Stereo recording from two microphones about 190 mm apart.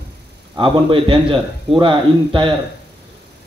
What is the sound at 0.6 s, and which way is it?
A man's voice, 25° right (ahead or behind).